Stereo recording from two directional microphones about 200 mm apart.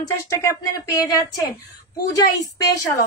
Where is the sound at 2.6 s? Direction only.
15° left (ahead or behind).